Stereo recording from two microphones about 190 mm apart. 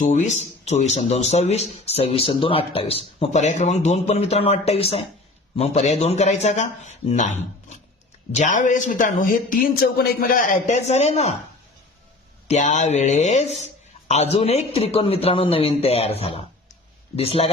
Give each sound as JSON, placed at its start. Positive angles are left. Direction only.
{"t": 0.0, "sound": "a man's voice", "side_deg": 40}
{"t": 12.5, "sound": "speech", "side_deg": 40}